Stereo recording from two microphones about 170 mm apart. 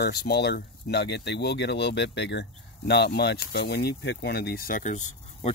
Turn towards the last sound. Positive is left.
turn(degrees=45)  # may be behind; listen again after turning